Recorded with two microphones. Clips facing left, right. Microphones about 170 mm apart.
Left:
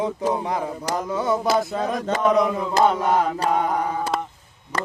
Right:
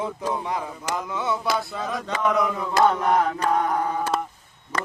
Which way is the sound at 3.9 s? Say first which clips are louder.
Even; centre (ahead or behind).